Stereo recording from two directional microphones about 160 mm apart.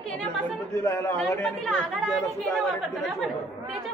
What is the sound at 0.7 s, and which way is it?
Speech, 15° left (ahead or behind).